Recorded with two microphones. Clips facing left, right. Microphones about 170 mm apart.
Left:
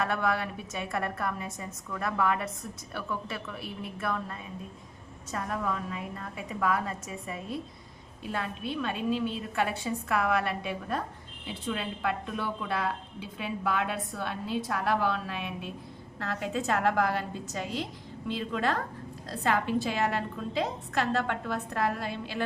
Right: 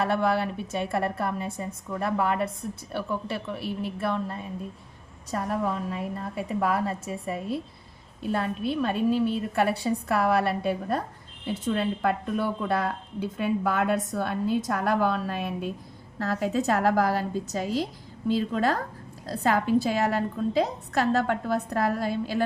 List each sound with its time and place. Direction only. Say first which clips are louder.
0.0 s a woman's voice: right 5 dB; 30° right (ahead or behind)